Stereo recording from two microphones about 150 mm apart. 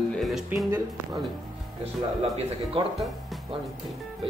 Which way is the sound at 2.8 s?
35° right (ahead or behind).